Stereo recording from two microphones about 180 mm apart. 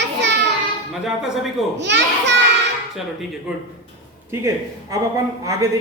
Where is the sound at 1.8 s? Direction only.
75° right (ahead or behind).